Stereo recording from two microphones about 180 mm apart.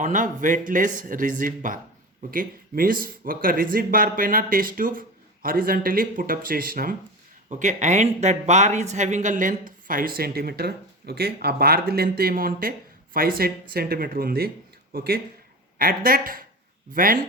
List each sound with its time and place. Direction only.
0.0 s speech: 45° right (ahead or behind)
7.5 s speech: 40° right (ahead or behind)